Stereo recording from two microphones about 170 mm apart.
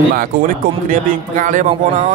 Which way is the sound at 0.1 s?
55° right (ahead or behind).